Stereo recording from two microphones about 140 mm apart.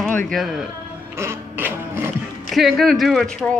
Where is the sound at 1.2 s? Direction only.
15° right (ahead or behind).